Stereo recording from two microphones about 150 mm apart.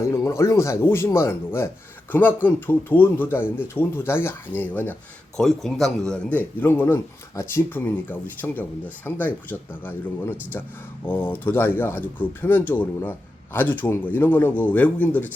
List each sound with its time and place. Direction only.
0.0 s speech: 20° left (ahead or behind)
5.4 s speech: centre (ahead or behind)